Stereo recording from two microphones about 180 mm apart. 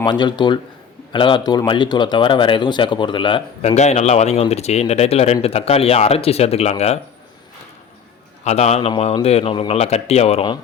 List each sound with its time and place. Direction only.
0.0 s speech: 25° left (ahead or behind)
8.4 s speech: 40° left (ahead or behind)